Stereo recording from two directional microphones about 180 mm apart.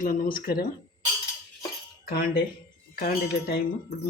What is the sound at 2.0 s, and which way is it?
Speech, 55° left (ahead or behind).